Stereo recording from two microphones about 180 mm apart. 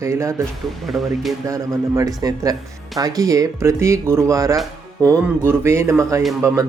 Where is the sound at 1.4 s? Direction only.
20° right (ahead or behind).